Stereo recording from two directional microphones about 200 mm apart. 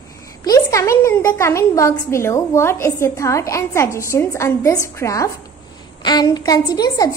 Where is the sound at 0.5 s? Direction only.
15° left (ahead or behind).